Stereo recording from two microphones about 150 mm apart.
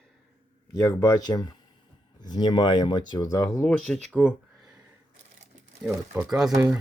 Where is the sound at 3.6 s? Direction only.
5° left (ahead or behind).